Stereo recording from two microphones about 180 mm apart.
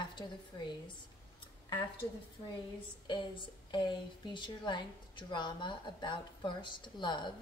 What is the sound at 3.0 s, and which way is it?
A woman's voice, 25° left (ahead or behind).